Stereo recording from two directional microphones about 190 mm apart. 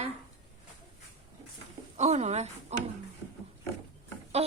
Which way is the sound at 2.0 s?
35° right (ahead or behind).